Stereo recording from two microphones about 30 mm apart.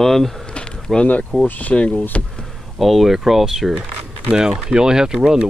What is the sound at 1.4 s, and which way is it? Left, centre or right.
Speech, left.